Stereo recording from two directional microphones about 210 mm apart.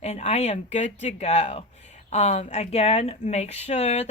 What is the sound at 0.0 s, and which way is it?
A woman's voice, 30° left (ahead or behind).